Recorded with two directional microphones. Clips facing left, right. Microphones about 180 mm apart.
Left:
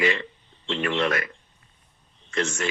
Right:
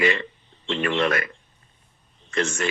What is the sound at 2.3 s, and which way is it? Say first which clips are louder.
Speech: right 2 dB; 55° right (ahead or behind).